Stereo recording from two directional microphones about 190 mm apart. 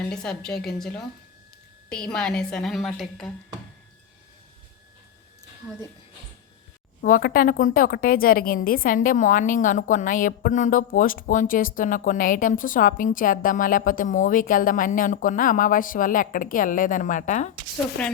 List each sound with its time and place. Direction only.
0.1 s a woman's voice: 5° left (ahead or behind)
2.0 s a woman's voice: 5° left (ahead or behind)
7.0 s a woman's voice: 50° left (ahead or behind)
18.0 s a woman's voice: 5° left (ahead or behind)